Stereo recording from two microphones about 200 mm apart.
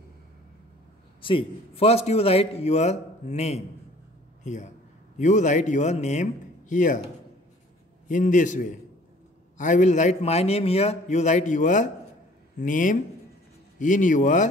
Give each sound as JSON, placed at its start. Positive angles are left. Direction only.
{"t": 1.2, "sound": "a man's voice", "side_deg": 30}
{"t": 8.1, "sound": "a man's voice", "side_deg": 40}